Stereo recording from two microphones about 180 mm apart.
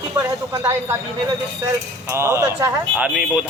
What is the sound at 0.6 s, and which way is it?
Speech, 15° right (ahead or behind).